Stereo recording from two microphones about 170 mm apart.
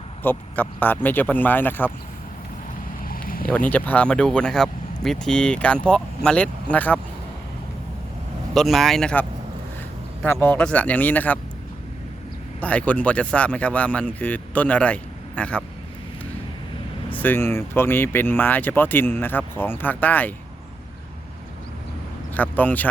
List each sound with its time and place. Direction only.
0.2 s speech: 10° left (ahead or behind)
3.0 s a sound: 60° left (ahead or behind)
3.4 s speech: 10° left (ahead or behind)
8.5 s speech: centre (ahead or behind)
10.4 s speech: 10° left (ahead or behind)
12.5 s speech: 10° left (ahead or behind)
17.1 s speech: 10° left (ahead or behind)
22.4 s speech: 10° left (ahead or behind)